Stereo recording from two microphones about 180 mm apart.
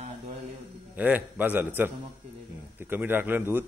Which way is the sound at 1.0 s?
10° right (ahead or behind).